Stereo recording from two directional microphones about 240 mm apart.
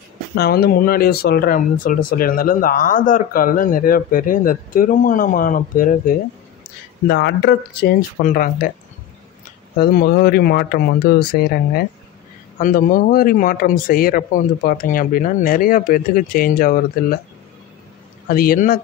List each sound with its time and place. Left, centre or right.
0.4 s speech: left
9.8 s speech: left
18.3 s speech: left